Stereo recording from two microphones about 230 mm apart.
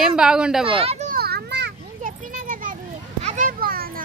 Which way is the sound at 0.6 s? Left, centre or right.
Right.